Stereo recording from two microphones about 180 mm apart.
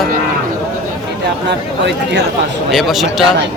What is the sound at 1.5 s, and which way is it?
Speech, 70° right (ahead or behind).